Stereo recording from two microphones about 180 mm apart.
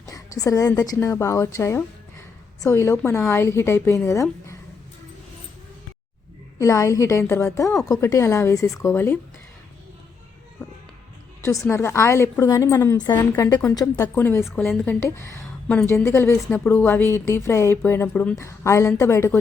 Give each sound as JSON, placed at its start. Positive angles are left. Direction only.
{"t": 0.0, "sound": "a sound", "side_deg": 20}
{"t": 0.9, "sound": "a woman's voice", "side_deg": 15}
{"t": 6.6, "sound": "a woman's voice", "side_deg": 15}
{"t": 11.7, "sound": "a woman's voice", "side_deg": 15}